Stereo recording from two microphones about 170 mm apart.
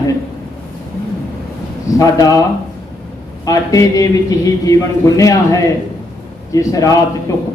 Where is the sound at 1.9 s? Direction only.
20° left (ahead or behind).